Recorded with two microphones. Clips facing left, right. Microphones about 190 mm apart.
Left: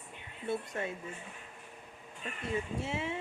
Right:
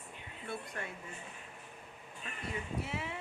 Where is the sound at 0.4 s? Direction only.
25° left (ahead or behind).